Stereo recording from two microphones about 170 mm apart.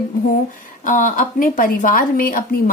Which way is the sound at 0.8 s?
50° left (ahead or behind).